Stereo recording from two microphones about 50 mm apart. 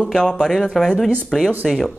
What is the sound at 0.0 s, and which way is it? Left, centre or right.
Speech, centre.